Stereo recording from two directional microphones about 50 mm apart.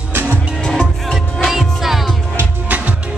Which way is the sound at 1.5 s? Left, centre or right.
Centre.